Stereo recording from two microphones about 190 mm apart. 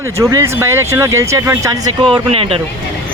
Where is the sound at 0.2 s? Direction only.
15° right (ahead or behind).